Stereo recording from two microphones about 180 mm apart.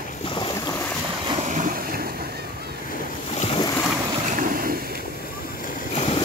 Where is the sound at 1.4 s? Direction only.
45° right (ahead or behind).